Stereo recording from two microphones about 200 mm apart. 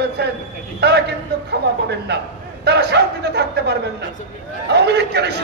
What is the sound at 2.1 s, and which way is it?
Speech, 55° right (ahead or behind).